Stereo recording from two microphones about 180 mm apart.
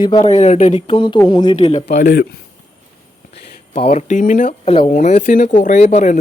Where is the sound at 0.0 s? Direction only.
30° left (ahead or behind).